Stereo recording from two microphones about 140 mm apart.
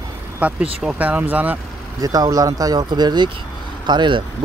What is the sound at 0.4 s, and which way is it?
Speech, 10° right (ahead or behind).